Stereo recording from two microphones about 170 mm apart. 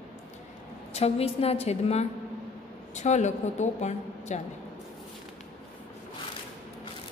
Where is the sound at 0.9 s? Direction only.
35° left (ahead or behind).